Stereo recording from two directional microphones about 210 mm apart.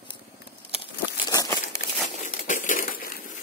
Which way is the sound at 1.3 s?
15° left (ahead or behind).